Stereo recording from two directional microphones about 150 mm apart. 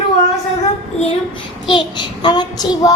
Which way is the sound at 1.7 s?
30° left (ahead or behind).